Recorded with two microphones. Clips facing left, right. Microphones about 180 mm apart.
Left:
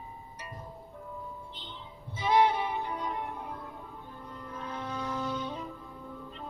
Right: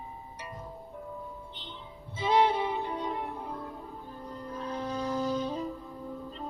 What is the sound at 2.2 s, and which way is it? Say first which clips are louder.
Music: even; 25° right (ahead or behind).